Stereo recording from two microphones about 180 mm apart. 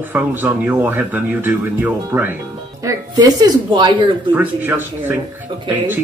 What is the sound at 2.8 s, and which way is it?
A woman's voice, 20° right (ahead or behind).